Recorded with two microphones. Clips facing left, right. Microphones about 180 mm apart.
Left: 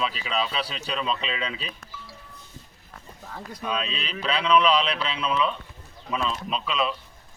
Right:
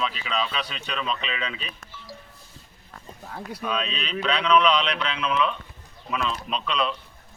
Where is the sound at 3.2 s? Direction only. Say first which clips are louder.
Right 3 dB; 10° right (ahead or behind).